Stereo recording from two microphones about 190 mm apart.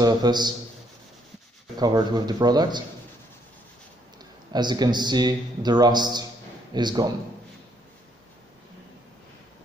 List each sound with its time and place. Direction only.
0.0 s a man's voice: 20° right (ahead or behind)
1.8 s a man's voice: 20° right (ahead or behind)
4.5 s a man's voice: 20° right (ahead or behind)